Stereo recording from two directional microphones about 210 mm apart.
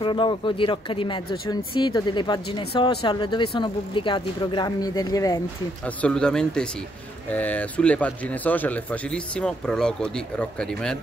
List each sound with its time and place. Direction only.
0.0 s speech: 25° left (ahead or behind)
6.0 s speech: 5° left (ahead or behind)